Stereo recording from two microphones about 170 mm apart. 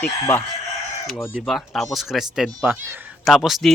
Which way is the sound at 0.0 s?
10° left (ahead or behind).